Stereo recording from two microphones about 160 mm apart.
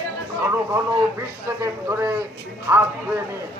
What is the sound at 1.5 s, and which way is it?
A man's voice, 15° right (ahead or behind).